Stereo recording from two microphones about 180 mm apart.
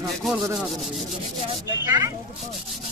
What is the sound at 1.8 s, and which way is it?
Speech, 15° right (ahead or behind).